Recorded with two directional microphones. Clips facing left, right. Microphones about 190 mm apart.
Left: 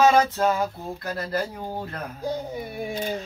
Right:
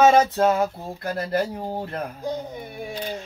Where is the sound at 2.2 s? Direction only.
5° left (ahead or behind).